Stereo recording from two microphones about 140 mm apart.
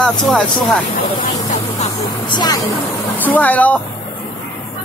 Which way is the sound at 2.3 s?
30° left (ahead or behind).